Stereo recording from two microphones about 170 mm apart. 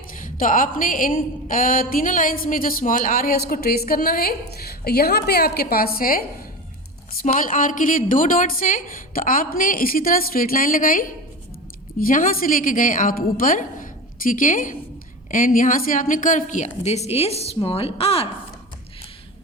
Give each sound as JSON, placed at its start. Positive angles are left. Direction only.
{"t": 0.2, "sound": "a woman's voice", "side_deg": 55}